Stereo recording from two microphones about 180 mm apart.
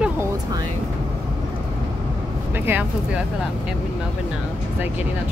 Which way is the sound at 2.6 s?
10° right (ahead or behind).